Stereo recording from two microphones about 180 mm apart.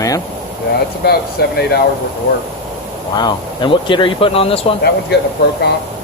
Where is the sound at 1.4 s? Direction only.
60° left (ahead or behind).